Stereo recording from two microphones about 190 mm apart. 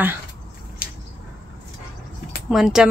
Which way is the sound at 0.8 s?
50° left (ahead or behind).